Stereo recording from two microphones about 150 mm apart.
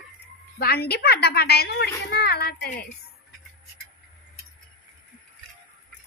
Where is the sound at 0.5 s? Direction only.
90° left.